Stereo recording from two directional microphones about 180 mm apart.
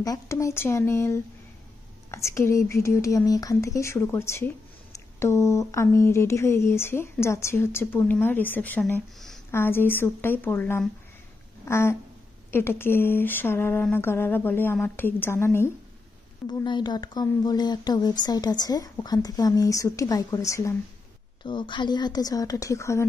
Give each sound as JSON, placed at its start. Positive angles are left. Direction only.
{"t": 0.0, "sound": "speech", "side_deg": 20}
{"t": 11.6, "sound": "a sound", "side_deg": 15}
{"t": 12.4, "sound": "speech", "side_deg": 15}
{"t": 16.4, "sound": "speech", "side_deg": 25}